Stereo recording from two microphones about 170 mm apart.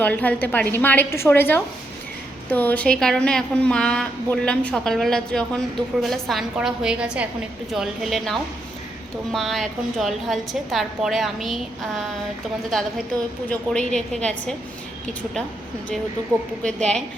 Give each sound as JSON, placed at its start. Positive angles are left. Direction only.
{"t": 0.0, "sound": "a woman's voice", "side_deg": 10}
{"t": 13.5, "sound": "a woman's voice", "side_deg": 5}
{"t": 16.6, "sound": "a woman's voice", "side_deg": 5}